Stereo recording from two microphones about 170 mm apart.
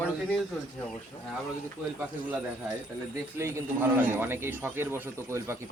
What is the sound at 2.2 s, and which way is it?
A man's voice, 10° right (ahead or behind).